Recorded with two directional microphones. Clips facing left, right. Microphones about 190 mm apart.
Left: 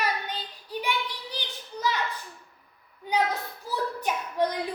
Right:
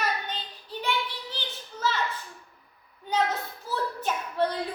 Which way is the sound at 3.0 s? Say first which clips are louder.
Even; 10° left (ahead or behind).